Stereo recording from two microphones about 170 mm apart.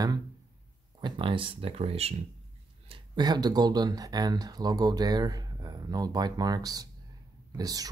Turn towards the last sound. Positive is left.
turn(degrees=-20)  # may be behind; listen again after turning